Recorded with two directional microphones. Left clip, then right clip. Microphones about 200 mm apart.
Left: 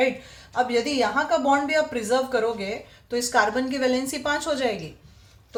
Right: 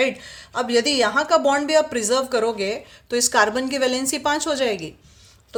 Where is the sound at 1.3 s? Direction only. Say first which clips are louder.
Right 4 dB; 60° right (ahead or behind).